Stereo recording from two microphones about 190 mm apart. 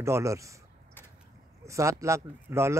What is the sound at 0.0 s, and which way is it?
Speech, 15° right (ahead or behind).